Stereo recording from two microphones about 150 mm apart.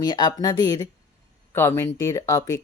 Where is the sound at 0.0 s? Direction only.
25° left (ahead or behind).